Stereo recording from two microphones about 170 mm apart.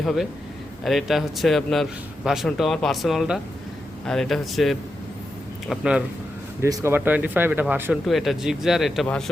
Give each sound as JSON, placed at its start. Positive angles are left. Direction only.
{"t": 0.0, "sound": "a man's voice", "side_deg": 0}
{"t": 6.6, "sound": "speech", "side_deg": -15}
{"t": 8.0, "sound": "a man's voice", "side_deg": 0}